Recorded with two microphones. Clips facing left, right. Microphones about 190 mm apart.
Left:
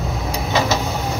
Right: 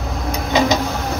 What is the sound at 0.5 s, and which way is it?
Printer, 15° right (ahead or behind).